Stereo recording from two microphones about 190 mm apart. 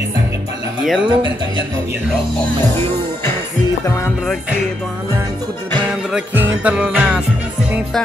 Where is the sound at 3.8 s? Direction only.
15° left (ahead or behind).